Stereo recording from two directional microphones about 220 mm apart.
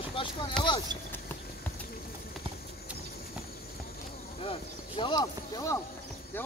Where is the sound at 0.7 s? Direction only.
15° left (ahead or behind).